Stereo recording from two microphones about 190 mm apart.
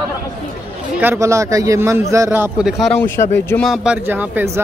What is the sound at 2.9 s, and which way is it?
Speech, 10° left (ahead or behind).